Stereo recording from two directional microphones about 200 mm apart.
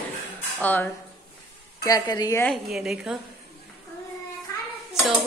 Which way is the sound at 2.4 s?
Centre (ahead or behind).